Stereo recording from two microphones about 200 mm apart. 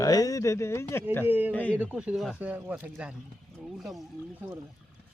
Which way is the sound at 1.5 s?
5° left (ahead or behind).